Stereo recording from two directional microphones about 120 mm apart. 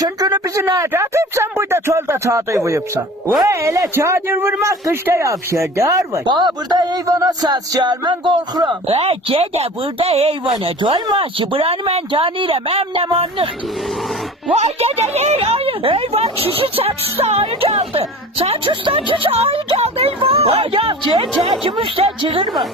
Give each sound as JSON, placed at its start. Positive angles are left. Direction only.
{"t": 0.0, "sound": "speech", "side_deg": -30}
{"t": 9.0, "sound": "speech", "side_deg": -55}
{"t": 10.5, "sound": "a woman's voice", "side_deg": -45}
{"t": 14.5, "sound": "a woman's voice", "side_deg": -60}